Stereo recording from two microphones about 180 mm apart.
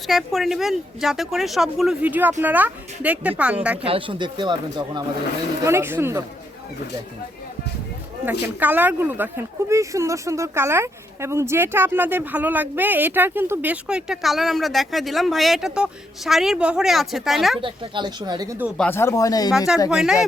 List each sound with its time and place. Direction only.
0.1 s speech: centre (ahead or behind)
3.8 s speech: 30° right (ahead or behind)
5.6 s speech: 15° right (ahead or behind)
8.2 s speech: 10° right (ahead or behind)
17.6 s speech: 25° right (ahead or behind)
18.8 s speech: 15° left (ahead or behind)
19.5 s speech: 5° right (ahead or behind)